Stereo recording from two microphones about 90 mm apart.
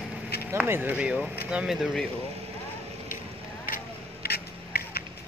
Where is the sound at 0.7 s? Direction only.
25° right (ahead or behind).